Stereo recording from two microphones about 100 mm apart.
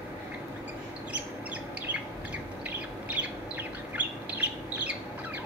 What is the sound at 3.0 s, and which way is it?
Bird, 15° right (ahead or behind).